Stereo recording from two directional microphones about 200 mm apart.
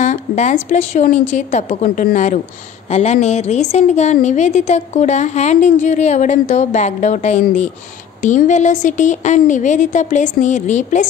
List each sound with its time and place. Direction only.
0.0 s a woman's voice: 35° left (ahead or behind)